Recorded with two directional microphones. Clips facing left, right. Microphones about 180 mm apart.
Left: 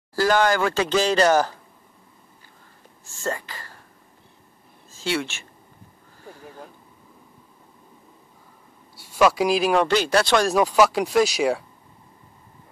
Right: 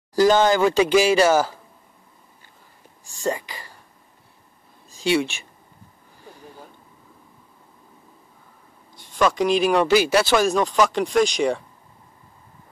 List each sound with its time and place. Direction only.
0.1 s speech: 20° right (ahead or behind)
3.1 s speech: 15° right (ahead or behind)
4.9 s speech: 15° right (ahead or behind)
8.9 s speech: 10° left (ahead or behind)